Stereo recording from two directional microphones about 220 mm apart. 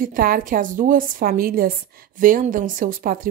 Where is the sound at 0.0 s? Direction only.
40° right (ahead or behind).